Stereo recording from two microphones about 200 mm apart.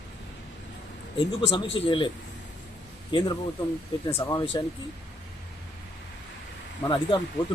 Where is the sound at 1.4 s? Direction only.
25° left (ahead or behind).